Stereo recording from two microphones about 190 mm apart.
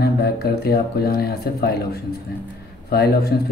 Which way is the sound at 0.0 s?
55° left (ahead or behind).